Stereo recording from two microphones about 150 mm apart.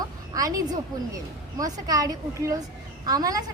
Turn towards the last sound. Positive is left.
turn(degrees=-25)  # may be behind; listen again after turning